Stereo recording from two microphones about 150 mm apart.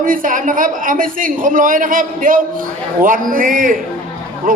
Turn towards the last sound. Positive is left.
turn(degrees=-65)  # may be behind; listen again after turning